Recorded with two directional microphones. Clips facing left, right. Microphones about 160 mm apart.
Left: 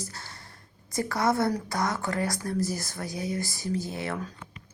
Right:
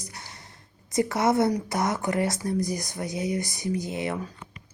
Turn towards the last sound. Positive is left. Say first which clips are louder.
# right 3 dB
turn(degrees=-15)  # may be behind; listen again after turning